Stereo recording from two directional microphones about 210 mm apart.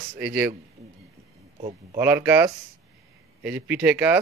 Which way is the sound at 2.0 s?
10° right (ahead or behind).